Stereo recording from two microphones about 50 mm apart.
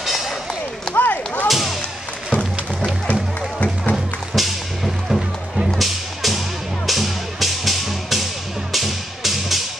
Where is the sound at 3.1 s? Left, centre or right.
Left.